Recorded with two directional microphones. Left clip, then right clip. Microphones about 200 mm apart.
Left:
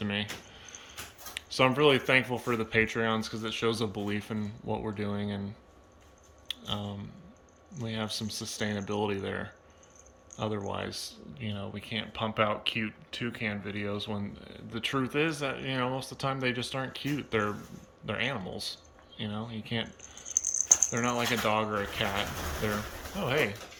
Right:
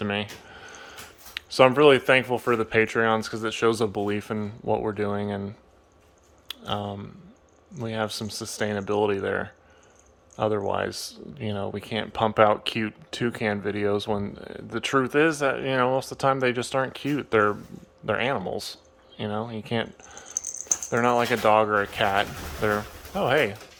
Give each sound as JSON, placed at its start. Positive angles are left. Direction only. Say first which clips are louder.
{"t": 0.0, "sound": "speech", "louder": "right 5 dB", "side_deg": -15}
{"t": 6.7, "sound": "speech", "louder": "right 10 dB", "side_deg": -15}